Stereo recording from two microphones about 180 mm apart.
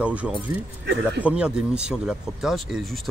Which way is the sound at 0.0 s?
5° right (ahead or behind).